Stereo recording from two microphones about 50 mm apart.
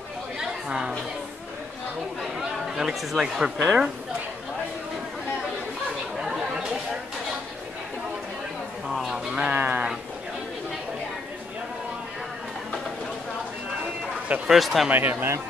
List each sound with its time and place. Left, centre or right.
0.4 s chatter: centre
2.6 s speech: centre
6.1 s chatter: centre
8.8 s a sound: centre
9.5 s sheep: right
14.5 s speech: centre
14.9 s speech: right